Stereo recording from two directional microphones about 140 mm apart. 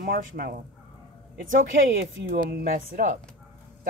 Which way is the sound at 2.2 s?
90° right.